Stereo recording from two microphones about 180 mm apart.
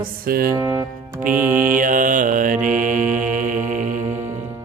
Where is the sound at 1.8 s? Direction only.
45° right (ahead or behind).